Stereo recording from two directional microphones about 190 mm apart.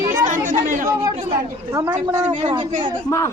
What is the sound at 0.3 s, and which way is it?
Chatter, 45° right (ahead or behind).